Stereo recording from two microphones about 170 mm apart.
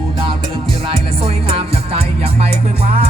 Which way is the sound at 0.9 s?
35° right (ahead or behind).